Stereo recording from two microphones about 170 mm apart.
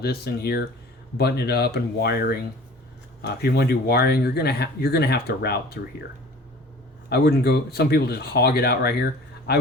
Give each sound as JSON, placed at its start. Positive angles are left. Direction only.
{"t": 0.0, "sound": "speech", "side_deg": 70}
{"t": 7.1, "sound": "speech", "side_deg": 70}